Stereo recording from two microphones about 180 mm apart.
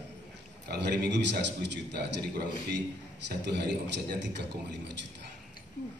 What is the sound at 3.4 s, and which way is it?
A man's voice, 70° right (ahead or behind).